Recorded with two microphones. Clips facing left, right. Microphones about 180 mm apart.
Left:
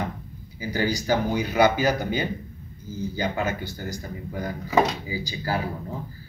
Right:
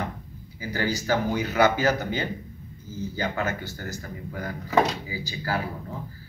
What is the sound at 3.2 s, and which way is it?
Speech, 15° left (ahead or behind).